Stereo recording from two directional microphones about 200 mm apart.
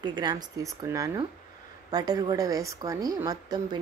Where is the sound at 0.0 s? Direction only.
20° right (ahead or behind).